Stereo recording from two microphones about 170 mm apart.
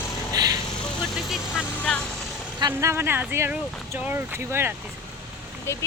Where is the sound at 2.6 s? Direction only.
15° right (ahead or behind).